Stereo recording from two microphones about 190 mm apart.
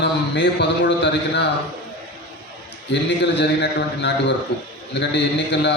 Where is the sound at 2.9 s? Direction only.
65° left (ahead or behind).